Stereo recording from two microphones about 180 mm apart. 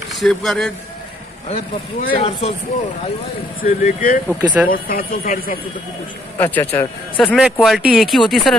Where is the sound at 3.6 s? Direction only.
50° left (ahead or behind).